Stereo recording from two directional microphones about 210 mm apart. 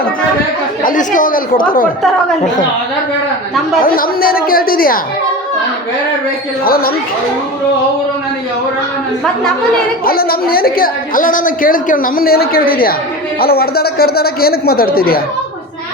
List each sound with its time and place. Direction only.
0.8 s speech: 40° left (ahead or behind)
3.8 s a woman's voice: 45° left (ahead or behind)
6.7 s a woman's voice: 45° left (ahead or behind)
10.0 s a woman's voice: 45° left (ahead or behind)